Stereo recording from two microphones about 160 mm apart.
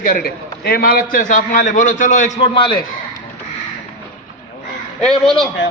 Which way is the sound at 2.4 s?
30° left (ahead or behind).